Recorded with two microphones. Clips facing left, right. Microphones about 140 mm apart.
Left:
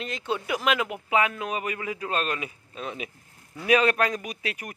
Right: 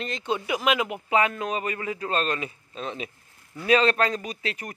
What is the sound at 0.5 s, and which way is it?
Speech, 5° right (ahead or behind).